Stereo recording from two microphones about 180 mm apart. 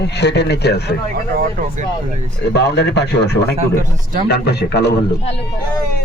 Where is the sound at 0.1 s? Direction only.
70° left (ahead or behind).